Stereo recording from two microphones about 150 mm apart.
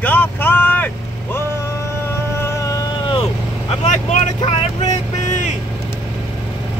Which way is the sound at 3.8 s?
55° left (ahead or behind).